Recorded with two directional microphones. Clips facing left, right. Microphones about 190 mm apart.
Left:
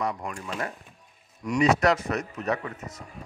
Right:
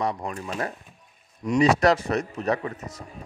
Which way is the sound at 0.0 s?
30° right (ahead or behind).